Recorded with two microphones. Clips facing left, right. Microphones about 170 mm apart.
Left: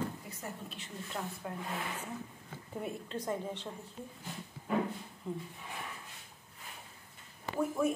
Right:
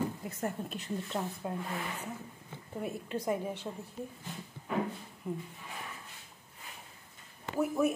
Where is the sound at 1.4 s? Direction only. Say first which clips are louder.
Right 4 dB; 20° right (ahead or behind).